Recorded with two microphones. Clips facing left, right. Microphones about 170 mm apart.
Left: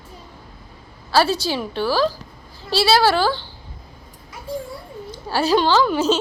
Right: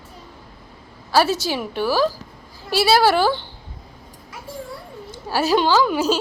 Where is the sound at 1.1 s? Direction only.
15° right (ahead or behind).